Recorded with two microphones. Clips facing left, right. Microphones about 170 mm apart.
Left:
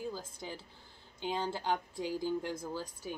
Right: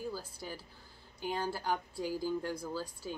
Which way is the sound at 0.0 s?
20° left (ahead or behind).